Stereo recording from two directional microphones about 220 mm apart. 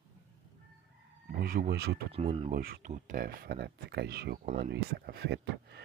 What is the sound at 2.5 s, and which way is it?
Speech, 40° right (ahead or behind).